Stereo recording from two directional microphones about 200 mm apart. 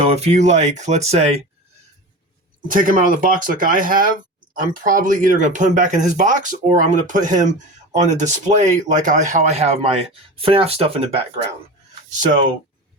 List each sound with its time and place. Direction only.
0.0 s speech: 30° right (ahead or behind)
2.7 s speech: 45° right (ahead or behind)